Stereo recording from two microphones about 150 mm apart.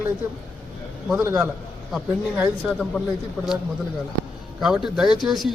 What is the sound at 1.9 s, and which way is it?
Speech, centre (ahead or behind).